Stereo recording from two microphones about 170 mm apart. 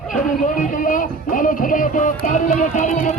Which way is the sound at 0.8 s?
50° left (ahead or behind).